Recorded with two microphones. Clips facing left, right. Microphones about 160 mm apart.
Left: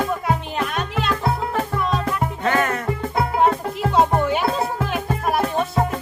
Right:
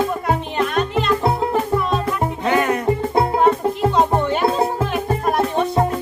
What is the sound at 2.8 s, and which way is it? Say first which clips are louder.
Music: right 5 dB; 25° right (ahead or behind).